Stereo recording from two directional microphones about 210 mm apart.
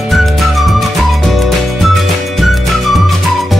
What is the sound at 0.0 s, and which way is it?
Music, centre (ahead or behind).